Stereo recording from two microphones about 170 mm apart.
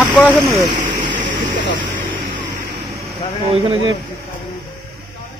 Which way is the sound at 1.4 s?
30° right (ahead or behind).